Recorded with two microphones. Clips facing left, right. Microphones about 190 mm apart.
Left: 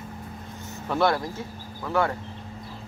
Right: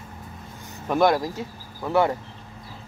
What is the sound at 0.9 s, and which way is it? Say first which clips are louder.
Speech: right 4 dB; 15° right (ahead or behind).